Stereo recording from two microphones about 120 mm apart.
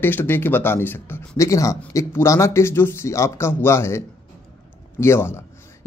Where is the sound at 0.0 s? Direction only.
15° left (ahead or behind).